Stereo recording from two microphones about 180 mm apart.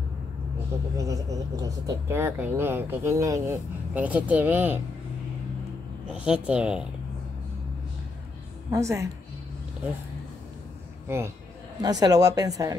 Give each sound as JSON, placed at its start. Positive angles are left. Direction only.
{"t": 0.9, "sound": "speech", "side_deg": -20}
{"t": 6.1, "sound": "speech", "side_deg": -5}
{"t": 8.6, "sound": "speech", "side_deg": -15}
{"t": 11.1, "sound": "speech", "side_deg": -15}